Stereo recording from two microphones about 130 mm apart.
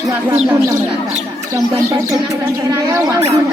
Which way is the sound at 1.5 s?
25° right (ahead or behind).